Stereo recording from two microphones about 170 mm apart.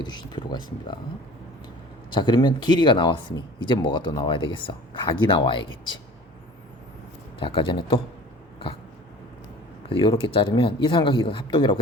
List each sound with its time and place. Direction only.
0.0 s speech: 25° left (ahead or behind)
2.0 s speech: 25° left (ahead or behind)
7.3 s speech: 30° left (ahead or behind)
10.3 s speech: 30° left (ahead or behind)